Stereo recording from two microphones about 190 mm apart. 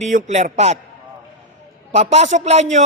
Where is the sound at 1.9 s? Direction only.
35° right (ahead or behind).